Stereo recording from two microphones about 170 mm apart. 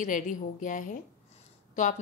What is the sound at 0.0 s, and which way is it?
A woman's voice, 50° left (ahead or behind).